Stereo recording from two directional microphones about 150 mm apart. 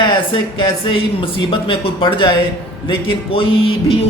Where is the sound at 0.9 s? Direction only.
35° left (ahead or behind).